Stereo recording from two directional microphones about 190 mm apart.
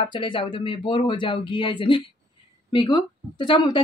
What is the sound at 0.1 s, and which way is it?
A woman's voice, 25° left (ahead or behind).